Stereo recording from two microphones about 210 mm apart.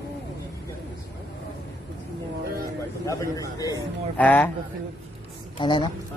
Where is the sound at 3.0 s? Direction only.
15° left (ahead or behind).